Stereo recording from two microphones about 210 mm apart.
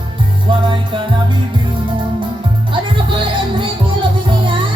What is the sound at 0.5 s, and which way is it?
Music, 25° right (ahead or behind).